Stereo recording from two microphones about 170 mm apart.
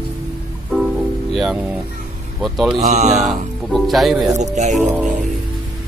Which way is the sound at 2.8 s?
40° right (ahead or behind).